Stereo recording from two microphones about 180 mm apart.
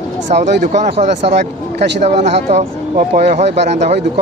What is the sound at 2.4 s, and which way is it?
Speech, 40° right (ahead or behind).